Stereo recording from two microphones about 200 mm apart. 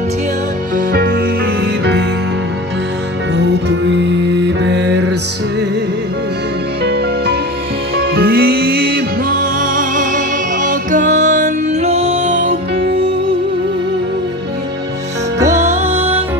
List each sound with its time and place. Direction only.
0.7 s music: 45° right (ahead or behind)
3.3 s music: 60° right (ahead or behind)
6.8 s music: 55° right (ahead or behind); by 12.5 s 40° right (ahead or behind)
15.3 s music: 15° right (ahead or behind)
15.7 s music: 30° right (ahead or behind)